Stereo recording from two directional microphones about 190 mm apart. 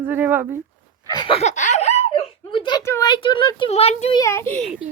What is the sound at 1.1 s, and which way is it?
Giggle, 25° left (ahead or behind).